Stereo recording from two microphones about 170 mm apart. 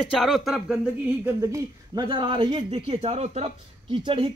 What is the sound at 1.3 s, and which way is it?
A man's voice, 15° right (ahead or behind).